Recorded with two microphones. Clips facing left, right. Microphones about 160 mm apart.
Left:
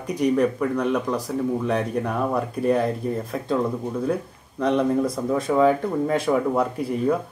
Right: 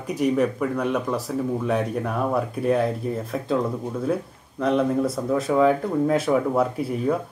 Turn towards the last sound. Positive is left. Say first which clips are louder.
# even
turn(degrees=-5)  # may be behind; listen again after turning